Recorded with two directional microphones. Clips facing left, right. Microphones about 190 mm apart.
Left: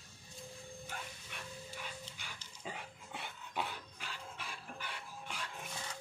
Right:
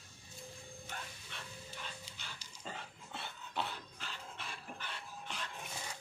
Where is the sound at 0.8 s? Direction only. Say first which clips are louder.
Right 1 dB; 10° left (ahead or behind).